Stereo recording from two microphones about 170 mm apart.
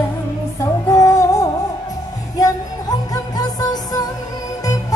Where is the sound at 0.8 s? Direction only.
20° left (ahead or behind).